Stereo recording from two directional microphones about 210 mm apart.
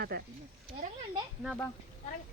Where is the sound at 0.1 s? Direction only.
50° right (ahead or behind).